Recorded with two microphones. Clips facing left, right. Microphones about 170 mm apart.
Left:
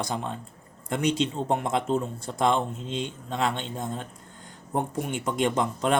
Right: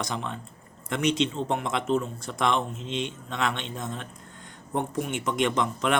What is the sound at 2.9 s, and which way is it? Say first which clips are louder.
Speech: right 3 dB; 80° right.